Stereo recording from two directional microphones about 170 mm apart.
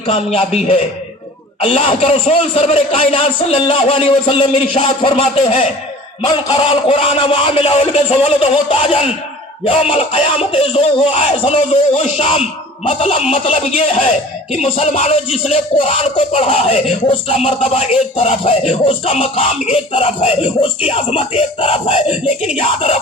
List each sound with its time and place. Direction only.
0.1 s a man's voice: 35° left (ahead or behind)